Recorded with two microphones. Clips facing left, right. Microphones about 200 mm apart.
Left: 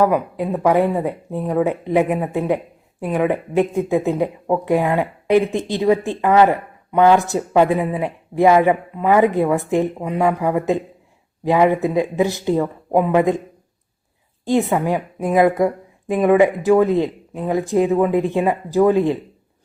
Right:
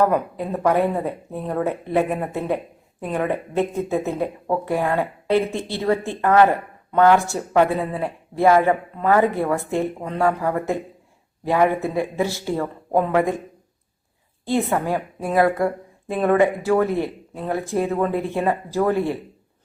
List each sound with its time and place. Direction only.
0.0 s speech: 10° left (ahead or behind)
14.4 s speech: 15° left (ahead or behind)